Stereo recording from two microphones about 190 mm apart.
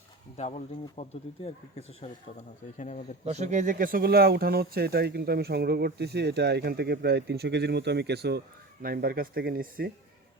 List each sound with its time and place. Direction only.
0.3 s speech: 35° left (ahead or behind)
2.7 s speech: 40° left (ahead or behind)
3.2 s speech: 35° right (ahead or behind)